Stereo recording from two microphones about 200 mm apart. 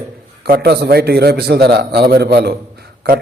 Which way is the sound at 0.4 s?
50° right (ahead or behind).